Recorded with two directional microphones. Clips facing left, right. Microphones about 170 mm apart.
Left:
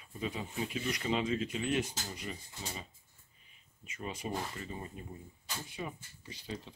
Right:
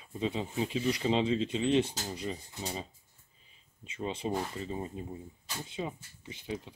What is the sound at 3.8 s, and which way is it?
Speech, 30° right (ahead or behind).